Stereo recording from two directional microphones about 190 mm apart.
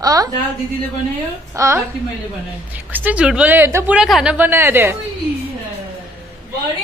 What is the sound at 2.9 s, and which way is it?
A woman's voice, 10° right (ahead or behind).